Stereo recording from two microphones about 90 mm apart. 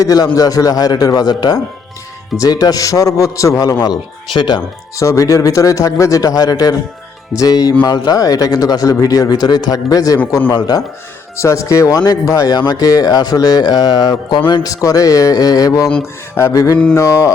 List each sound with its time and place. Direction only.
0.0 s a man's voice: 40° left (ahead or behind)
3.8 s speech: 60° left (ahead or behind)
4.9 s a man's voice: 35° left (ahead or behind)
11.3 s a man's voice: 35° left (ahead or behind); by 14.6 s 60° left (ahead or behind)
14.6 s a man's voice: 40° left (ahead or behind)